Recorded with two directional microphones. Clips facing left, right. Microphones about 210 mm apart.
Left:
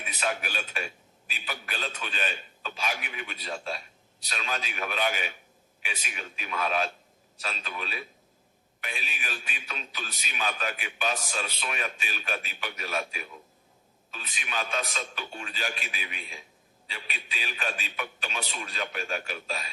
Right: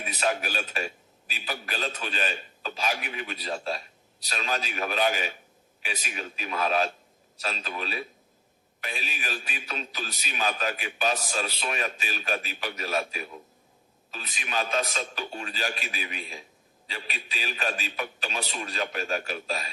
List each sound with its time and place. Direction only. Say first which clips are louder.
0.0 s a man's voice: right 4 dB; 35° right (ahead or behind)